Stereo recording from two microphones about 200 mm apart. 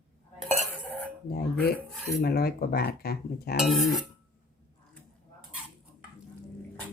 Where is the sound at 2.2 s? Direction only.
50° left (ahead or behind).